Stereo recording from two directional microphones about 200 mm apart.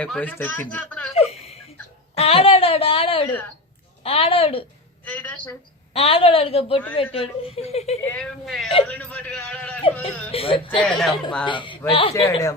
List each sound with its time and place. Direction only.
0.0 s speech: 5° left (ahead or behind)
1.1 s whimper: 30° left (ahead or behind)
2.1 s a sound: 30° left (ahead or behind)
4.0 s a woman's voice: 30° left (ahead or behind)
5.0 s speech: 10° left (ahead or behind)
5.9 s a woman's voice: 30° left (ahead or behind)
8.0 s a man's voice: 5° left (ahead or behind)
10.3 s a woman's voice: 25° left (ahead or behind)
10.8 s a man's voice: 5° left (ahead or behind)
11.4 s a woman's voice: 25° left (ahead or behind)